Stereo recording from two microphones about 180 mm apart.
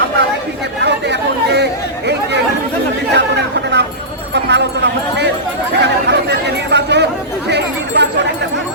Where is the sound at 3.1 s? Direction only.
70° right (ahead or behind).